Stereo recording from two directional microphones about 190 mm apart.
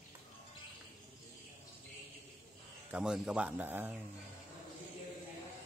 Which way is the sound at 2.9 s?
5° right (ahead or behind).